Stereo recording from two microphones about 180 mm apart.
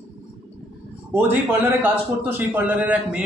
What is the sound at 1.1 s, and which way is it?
A man's voice, 10° right (ahead or behind).